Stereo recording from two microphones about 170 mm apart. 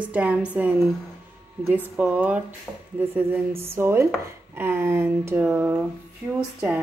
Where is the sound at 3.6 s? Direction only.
15° right (ahead or behind).